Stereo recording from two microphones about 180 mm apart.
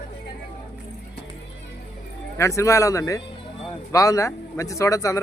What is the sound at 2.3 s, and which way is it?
A man's voice, 15° left (ahead or behind).